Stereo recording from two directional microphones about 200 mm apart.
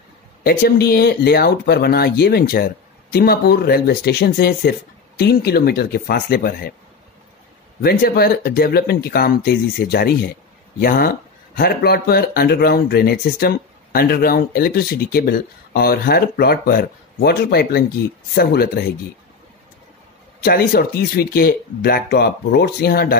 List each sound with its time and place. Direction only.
0.4 s speech: 45° left (ahead or behind)
7.8 s speech: 50° left (ahead or behind)
20.4 s speech: 50° left (ahead or behind)